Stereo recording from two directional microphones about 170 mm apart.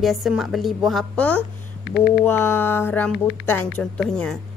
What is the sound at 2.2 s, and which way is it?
A woman's voice, 10° left (ahead or behind).